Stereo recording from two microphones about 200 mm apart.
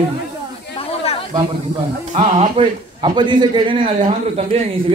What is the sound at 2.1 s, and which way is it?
A man's voice, 35° right (ahead or behind).